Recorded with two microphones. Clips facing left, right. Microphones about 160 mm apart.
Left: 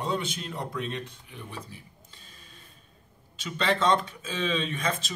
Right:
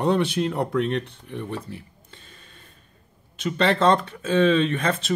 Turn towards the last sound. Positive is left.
turn(degrees=-60)  # may be behind; listen again after turning